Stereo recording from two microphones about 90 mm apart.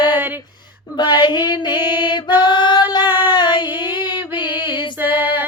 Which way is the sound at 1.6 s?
25° right (ahead or behind).